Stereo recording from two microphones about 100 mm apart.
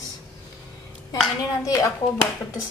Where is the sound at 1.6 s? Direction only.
35° left (ahead or behind).